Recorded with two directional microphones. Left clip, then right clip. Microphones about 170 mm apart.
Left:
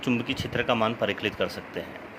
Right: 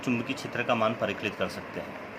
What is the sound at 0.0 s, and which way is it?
A man's voice, 45° left (ahead or behind).